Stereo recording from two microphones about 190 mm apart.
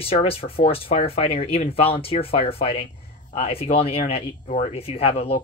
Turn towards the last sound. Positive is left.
turn(degrees=30)  # may be behind; listen again after turning